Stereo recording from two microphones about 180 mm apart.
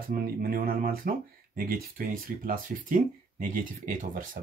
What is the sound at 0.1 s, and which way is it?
Speech, 55° right (ahead or behind).